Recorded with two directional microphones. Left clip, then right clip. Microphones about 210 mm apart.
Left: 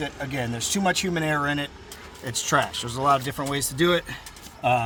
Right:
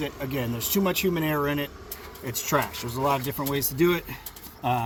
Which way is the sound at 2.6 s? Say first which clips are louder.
Left 1 dB; 20° left (ahead or behind).